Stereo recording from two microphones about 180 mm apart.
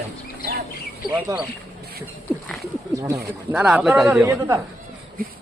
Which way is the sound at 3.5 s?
5° right (ahead or behind).